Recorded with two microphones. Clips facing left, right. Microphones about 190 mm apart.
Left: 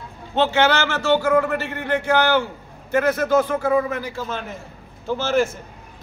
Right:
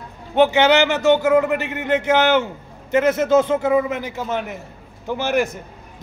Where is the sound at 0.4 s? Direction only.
15° right (ahead or behind).